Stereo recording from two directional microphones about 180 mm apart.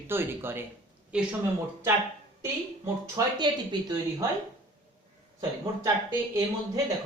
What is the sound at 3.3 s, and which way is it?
Speech, 25° right (ahead or behind).